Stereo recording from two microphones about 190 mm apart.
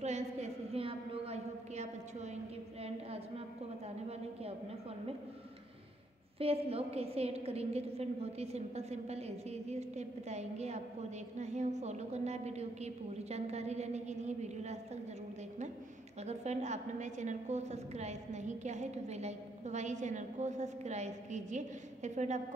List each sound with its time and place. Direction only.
0.0 s a sound: 35° right (ahead or behind)
2.8 s a woman's voice: 30° right (ahead or behind)
6.4 s a woman's voice: 30° right (ahead or behind)
16.3 s a woman's voice: 35° right (ahead or behind)